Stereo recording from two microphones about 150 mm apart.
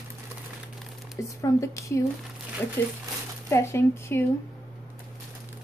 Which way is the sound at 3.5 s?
20° left (ahead or behind).